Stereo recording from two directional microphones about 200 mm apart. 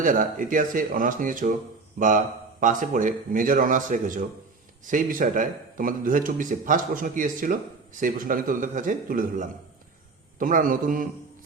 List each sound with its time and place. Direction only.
0.0 s speech: 40° right (ahead or behind)